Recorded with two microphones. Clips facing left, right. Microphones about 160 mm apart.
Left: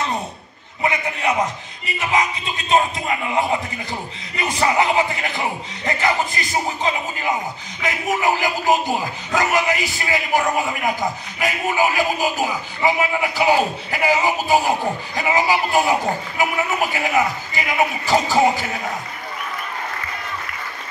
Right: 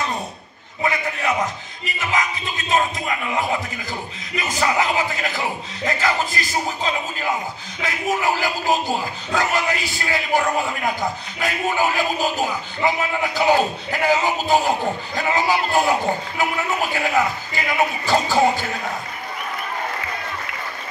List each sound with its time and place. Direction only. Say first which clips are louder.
2.7 s music: left 3 dB; 25° left (ahead or behind)
7.8 s speech: left 1 dB; 15° left (ahead or behind)